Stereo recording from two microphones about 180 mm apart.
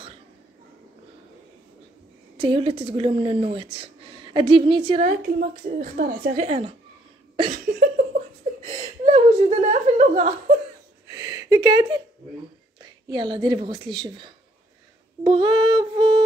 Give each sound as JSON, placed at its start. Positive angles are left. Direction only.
{"t": 2.3, "sound": "a woman's voice", "side_deg": -30}
{"t": 5.0, "sound": "a woman's voice", "side_deg": -50}
{"t": 7.5, "sound": "a sound", "side_deg": -50}
{"t": 8.6, "sound": "whimper", "side_deg": -40}
{"t": 11.1, "sound": "a sound", "side_deg": -20}
{"t": 13.1, "sound": "a woman's voice", "side_deg": -25}
{"t": 15.2, "sound": "music", "side_deg": -25}